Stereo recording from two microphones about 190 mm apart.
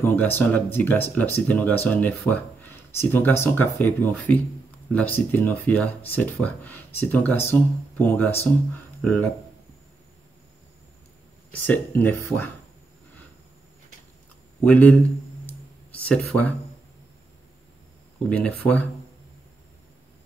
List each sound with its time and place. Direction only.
0.0 s speech: 10° left (ahead or behind)
11.6 s speech: 10° left (ahead or behind)
14.6 s speech: 10° left (ahead or behind)
15.4 s a sound: 5° left (ahead or behind)
18.3 s speech: 5° left (ahead or behind)